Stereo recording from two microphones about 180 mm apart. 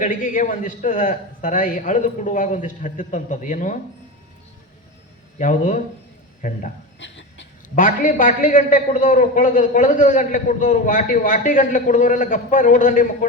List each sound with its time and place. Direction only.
0.0 s a man's voice: 45° left (ahead or behind)
5.4 s a man's voice: 45° left (ahead or behind)
7.0 s a sound: 85° left
7.8 s a man's voice: 45° left (ahead or behind)